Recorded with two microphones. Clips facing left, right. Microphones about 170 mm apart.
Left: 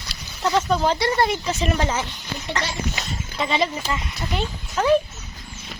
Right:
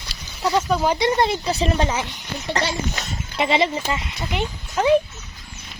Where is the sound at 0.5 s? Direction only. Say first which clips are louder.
Even; 10° right (ahead or behind).